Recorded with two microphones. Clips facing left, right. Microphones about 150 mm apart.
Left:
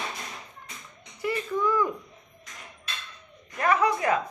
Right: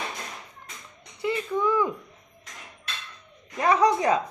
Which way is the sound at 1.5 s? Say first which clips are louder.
Right 1 dB; 15° right (ahead or behind).